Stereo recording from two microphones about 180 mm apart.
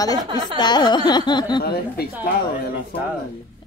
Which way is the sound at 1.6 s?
60° left (ahead or behind).